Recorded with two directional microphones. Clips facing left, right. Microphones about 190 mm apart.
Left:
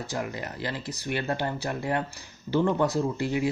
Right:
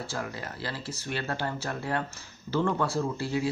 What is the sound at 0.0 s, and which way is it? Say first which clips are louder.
Speech: left 3 dB; 20° left (ahead or behind).